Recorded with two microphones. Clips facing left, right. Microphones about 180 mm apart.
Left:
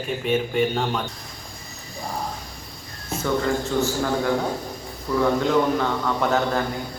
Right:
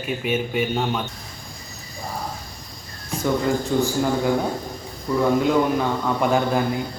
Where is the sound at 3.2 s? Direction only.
15° right (ahead or behind).